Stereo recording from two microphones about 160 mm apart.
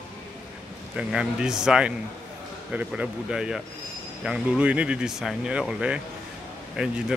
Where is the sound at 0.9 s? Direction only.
5° right (ahead or behind).